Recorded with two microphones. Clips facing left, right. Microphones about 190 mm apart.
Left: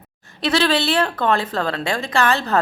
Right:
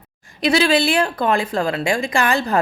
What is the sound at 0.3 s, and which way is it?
A woman's voice, 10° right (ahead or behind).